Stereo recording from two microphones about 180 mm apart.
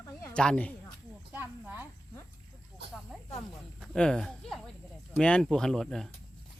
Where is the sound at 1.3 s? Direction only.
10° right (ahead or behind).